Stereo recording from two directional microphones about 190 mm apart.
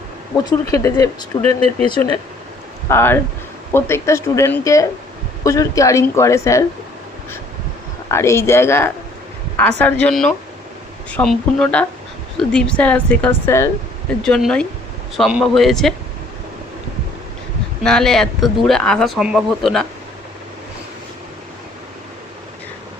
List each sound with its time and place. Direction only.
0.7 s a woman's voice: 15° left (ahead or behind)
1.5 s speech: 30° right (ahead or behind)
2.9 s a woman's voice: 10° left (ahead or behind)
8.1 s a woman's voice: 15° left (ahead or behind)
17.8 s speech: 5° left (ahead or behind)